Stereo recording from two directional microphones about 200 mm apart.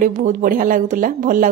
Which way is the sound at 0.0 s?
40° right (ahead or behind).